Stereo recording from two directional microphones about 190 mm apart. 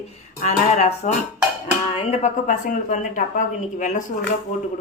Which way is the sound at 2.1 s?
40° left (ahead or behind).